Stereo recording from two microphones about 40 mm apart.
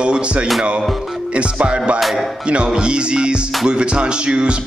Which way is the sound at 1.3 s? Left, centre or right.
Right.